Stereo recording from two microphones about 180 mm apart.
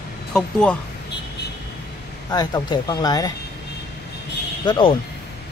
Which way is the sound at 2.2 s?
20° left (ahead or behind).